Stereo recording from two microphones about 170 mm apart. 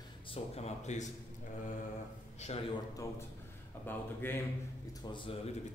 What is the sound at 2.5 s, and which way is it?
Speech, 35° left (ahead or behind).